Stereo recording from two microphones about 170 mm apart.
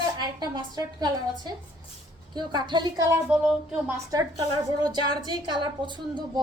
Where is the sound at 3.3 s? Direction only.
5° right (ahead or behind).